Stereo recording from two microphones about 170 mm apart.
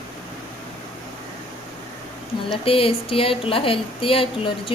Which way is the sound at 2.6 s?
35° left (ahead or behind).